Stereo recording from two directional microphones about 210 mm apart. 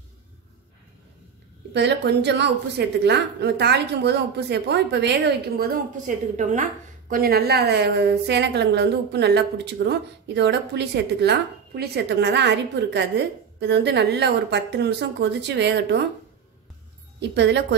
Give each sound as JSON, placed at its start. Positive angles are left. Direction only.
{"t": 1.7, "sound": "a woman's voice", "side_deg": -55}
{"t": 17.2, "sound": "a woman's voice", "side_deg": -55}